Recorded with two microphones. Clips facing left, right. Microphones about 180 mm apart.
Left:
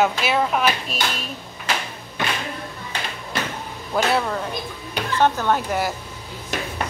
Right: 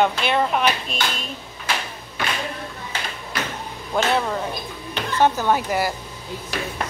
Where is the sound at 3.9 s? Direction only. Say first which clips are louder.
Even; centre (ahead or behind).